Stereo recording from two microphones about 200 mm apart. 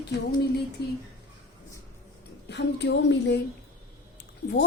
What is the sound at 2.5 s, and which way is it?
Speech, 60° left (ahead or behind).